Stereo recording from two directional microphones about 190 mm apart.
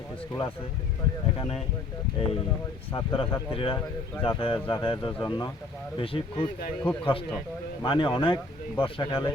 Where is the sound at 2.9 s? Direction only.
25° left (ahead or behind).